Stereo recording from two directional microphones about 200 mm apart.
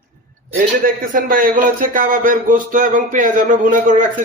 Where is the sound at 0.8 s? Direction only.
45° right (ahead or behind).